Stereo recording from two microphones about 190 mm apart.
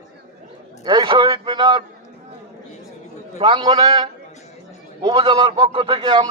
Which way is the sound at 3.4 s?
25° right (ahead or behind).